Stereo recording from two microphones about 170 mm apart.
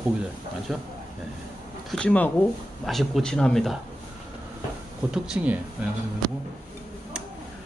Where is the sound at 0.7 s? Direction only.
Centre (ahead or behind).